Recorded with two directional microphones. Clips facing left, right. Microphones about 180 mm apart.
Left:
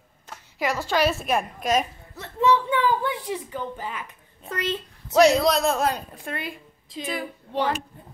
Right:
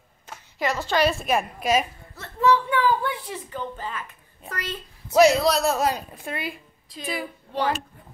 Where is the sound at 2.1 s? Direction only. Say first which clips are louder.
Even; 20° left (ahead or behind).